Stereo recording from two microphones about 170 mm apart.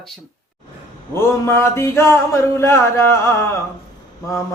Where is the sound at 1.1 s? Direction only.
15° left (ahead or behind).